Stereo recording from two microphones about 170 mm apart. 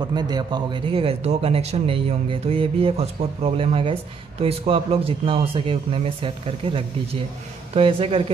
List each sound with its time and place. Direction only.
0.0 s a man's voice: 25° right (ahead or behind)